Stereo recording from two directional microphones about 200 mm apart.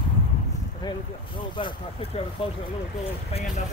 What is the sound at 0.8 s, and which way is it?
Speech, 25° left (ahead or behind).